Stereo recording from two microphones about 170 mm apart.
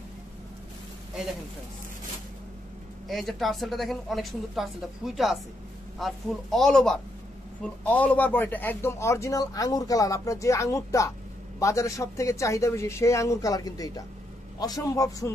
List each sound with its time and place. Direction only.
3.1 s a man's voice: centre (ahead or behind); by 15.3 s 20° left (ahead or behind)